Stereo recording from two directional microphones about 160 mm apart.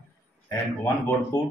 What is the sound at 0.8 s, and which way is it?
Speech, 20° left (ahead or behind).